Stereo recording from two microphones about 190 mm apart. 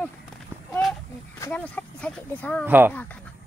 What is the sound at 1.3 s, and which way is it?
Speech, 10° left (ahead or behind).